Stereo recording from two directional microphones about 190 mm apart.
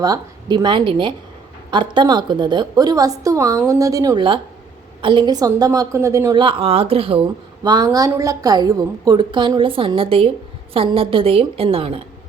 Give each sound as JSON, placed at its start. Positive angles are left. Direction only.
{"t": 0.0, "sound": "a woman's voice", "side_deg": -20}
{"t": 6.4, "sound": "a woman's voice", "side_deg": -30}